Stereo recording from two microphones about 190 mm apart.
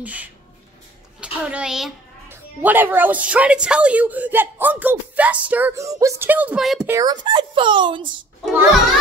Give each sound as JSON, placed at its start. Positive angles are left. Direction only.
{"t": 0.0, "sound": "a woman's voice", "side_deg": -10}
{"t": 6.9, "sound": "speech", "side_deg": -20}